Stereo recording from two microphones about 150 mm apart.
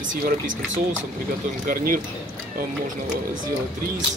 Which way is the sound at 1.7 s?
70° right (ahead or behind).